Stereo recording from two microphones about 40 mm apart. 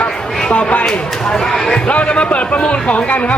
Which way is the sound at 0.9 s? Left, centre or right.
Centre.